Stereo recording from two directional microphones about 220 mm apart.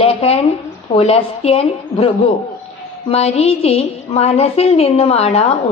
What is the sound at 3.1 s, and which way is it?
A woman's voice, 30° left (ahead or behind).